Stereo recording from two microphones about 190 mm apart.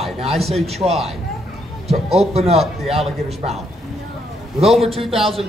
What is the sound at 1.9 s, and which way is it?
Speech, 35° right (ahead or behind).